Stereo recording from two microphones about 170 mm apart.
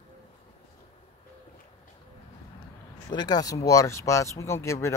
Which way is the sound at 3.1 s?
25° left (ahead or behind).